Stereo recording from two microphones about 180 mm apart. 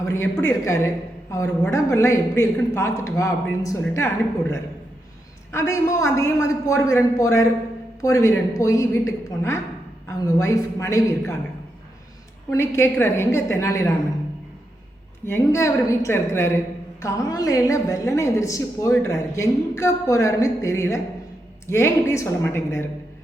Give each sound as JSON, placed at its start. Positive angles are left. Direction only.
{"t": 0.0, "sound": "a woman's voice", "side_deg": 15}
{"t": 12.5, "sound": "a woman's voice", "side_deg": 15}
{"t": 15.3, "sound": "a woman's voice", "side_deg": 15}